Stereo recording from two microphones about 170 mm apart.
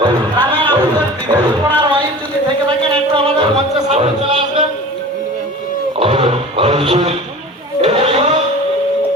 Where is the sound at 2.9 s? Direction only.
30° right (ahead or behind).